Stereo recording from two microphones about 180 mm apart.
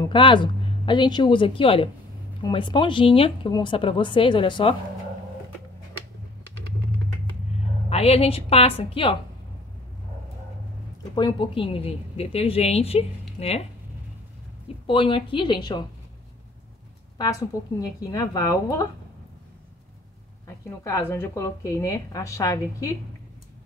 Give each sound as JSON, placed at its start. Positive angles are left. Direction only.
{"t": 0.0, "sound": "speech", "side_deg": 25}
{"t": 7.9, "sound": "a woman's voice", "side_deg": 35}
{"t": 11.1, "sound": "a woman's voice", "side_deg": 25}
{"t": 14.9, "sound": "speech", "side_deg": 30}
{"t": 17.2, "sound": "speech", "side_deg": 20}
{"t": 20.4, "sound": "a woman's voice", "side_deg": 15}